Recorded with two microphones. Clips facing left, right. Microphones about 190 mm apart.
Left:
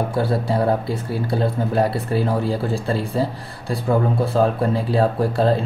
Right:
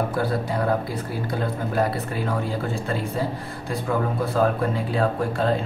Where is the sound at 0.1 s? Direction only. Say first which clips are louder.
Left 4 dB; 30° left (ahead or behind).